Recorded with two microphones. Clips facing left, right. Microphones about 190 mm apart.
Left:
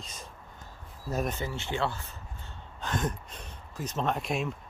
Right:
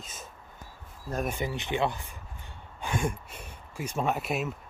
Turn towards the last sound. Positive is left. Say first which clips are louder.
# right 1 dB
turn(degrees=-5)  # may be behind; listen again after turning